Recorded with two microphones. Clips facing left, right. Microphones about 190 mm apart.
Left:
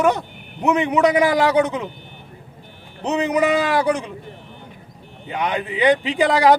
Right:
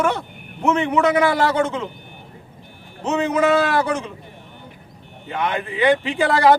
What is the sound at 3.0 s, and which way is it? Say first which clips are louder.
A man's voice: even; 15° left (ahead or behind).